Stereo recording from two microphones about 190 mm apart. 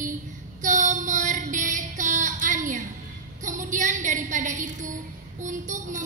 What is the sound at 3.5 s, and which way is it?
A woman's voice, 40° right (ahead or behind).